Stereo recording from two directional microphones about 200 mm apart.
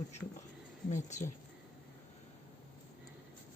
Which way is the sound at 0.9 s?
35° left (ahead or behind).